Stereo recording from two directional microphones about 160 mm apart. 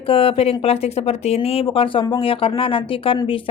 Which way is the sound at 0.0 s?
35° left (ahead or behind).